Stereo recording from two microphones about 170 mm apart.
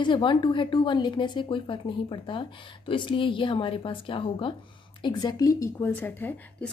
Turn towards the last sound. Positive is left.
turn(degrees=10)  # may be behind; listen again after turning